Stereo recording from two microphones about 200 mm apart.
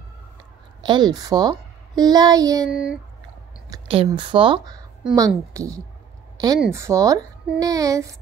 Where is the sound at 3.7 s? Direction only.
30° right (ahead or behind).